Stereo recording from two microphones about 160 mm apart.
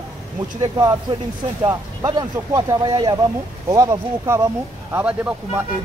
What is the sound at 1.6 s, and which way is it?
A man's voice, 20° right (ahead or behind).